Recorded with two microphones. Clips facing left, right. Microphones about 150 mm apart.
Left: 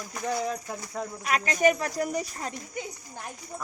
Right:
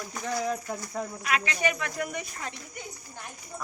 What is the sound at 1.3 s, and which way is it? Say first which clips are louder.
Speech: left 6 dB; 40° left (ahead or behind).